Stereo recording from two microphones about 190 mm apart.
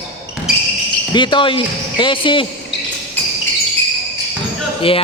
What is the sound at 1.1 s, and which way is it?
Speech, 25° left (ahead or behind).